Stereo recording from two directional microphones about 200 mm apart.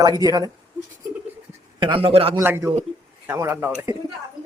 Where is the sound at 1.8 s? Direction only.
25° right (ahead or behind).